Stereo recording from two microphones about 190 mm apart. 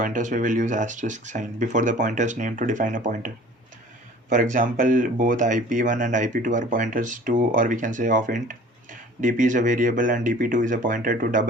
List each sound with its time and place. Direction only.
0.0 s speech: 40° right (ahead or behind)